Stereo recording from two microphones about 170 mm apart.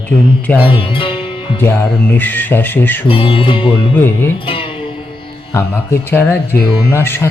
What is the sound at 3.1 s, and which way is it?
Music, 30° left (ahead or behind).